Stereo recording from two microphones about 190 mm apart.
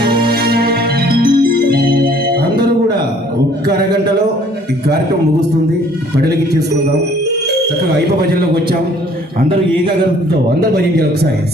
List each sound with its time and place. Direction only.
0.0 s music: 25° right (ahead or behind)
0.3 s music: 55° right (ahead or behind)
10.6 s a man's voice: 55° right (ahead or behind)